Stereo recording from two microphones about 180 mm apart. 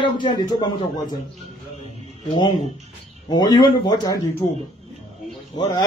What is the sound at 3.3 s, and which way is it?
Speech, 25° left (ahead or behind).